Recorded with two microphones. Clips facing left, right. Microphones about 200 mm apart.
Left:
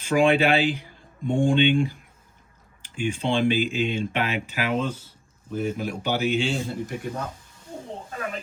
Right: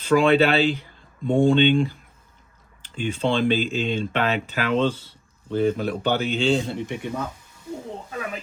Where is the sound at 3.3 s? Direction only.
15° left (ahead or behind).